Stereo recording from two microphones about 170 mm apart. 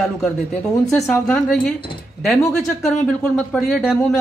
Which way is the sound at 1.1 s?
5° left (ahead or behind).